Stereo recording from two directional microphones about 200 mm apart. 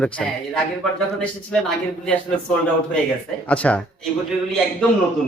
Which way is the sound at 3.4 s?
5° left (ahead or behind).